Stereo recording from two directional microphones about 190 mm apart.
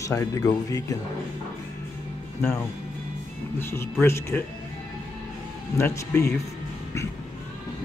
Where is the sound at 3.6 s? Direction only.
10° left (ahead or behind).